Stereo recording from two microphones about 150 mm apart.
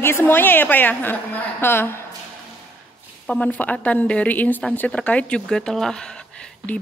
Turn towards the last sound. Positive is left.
turn(degrees=5)  # may be behind; listen again after turning